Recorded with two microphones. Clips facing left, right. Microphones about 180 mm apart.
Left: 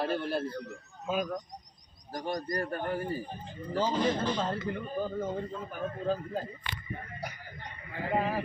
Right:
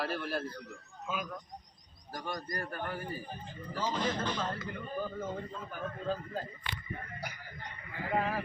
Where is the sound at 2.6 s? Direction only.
35° left (ahead or behind).